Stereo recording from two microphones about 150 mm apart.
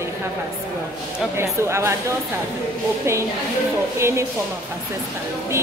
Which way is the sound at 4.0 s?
15° right (ahead or behind).